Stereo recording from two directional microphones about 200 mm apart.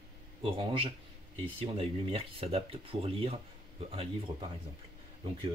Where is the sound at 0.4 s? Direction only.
25° right (ahead or behind).